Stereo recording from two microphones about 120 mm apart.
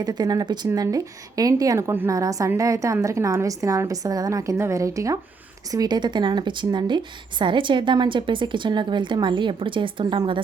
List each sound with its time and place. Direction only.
0.0 s a woman's voice: 35° right (ahead or behind)